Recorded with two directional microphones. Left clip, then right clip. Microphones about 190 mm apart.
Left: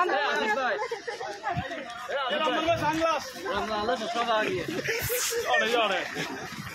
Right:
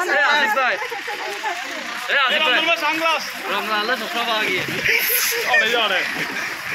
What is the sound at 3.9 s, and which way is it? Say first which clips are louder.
Speech: right 6 dB; 35° left (ahead or behind).